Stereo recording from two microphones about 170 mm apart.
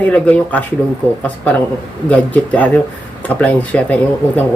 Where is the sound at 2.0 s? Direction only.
10° left (ahead or behind).